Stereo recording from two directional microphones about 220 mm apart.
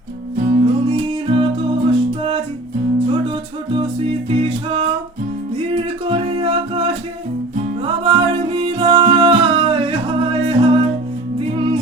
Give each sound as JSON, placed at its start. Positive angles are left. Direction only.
{"t": 0.3, "sound": "music", "side_deg": -30}
{"t": 5.5, "sound": "male singing", "side_deg": -25}
{"t": 7.8, "sound": "music", "side_deg": -25}